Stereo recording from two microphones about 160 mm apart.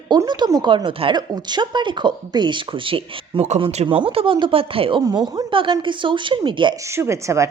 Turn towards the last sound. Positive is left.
turn(degrees=-20)  # may be behind; listen again after turning